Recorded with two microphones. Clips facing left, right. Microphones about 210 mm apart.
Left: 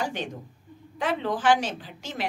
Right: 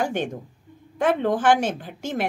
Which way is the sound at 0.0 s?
50° right (ahead or behind).